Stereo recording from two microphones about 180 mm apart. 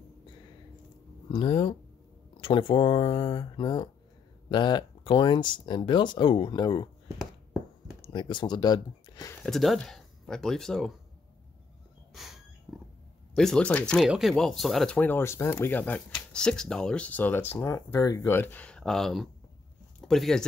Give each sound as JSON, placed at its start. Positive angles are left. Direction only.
{"t": 1.3, "sound": "speech", "side_deg": 30}
{"t": 8.0, "sound": "speech", "side_deg": 25}
{"t": 9.4, "sound": "speech", "side_deg": 0}
{"t": 12.1, "sound": "snort", "side_deg": 0}
{"t": 12.7, "sound": "a sound", "side_deg": 0}
{"t": 13.3, "sound": "speech", "side_deg": 5}